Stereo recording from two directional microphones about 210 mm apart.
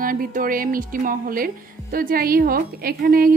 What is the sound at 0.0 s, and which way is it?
Speech, 40° right (ahead or behind).